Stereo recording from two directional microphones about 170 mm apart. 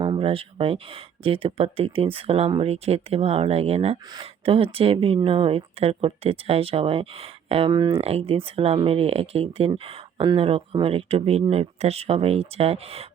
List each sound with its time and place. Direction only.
0.0 s speech: 30° right (ahead or behind)